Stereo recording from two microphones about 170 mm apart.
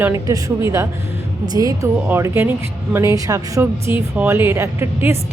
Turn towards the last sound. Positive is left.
turn(degrees=-15)  # may be behind; listen again after turning